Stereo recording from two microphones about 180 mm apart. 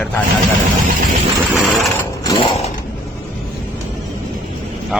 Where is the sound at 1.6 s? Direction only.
Centre (ahead or behind).